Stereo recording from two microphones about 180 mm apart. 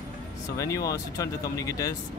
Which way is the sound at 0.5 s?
20° left (ahead or behind).